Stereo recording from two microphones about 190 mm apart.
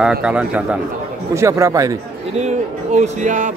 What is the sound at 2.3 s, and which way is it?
Speech, 35° right (ahead or behind).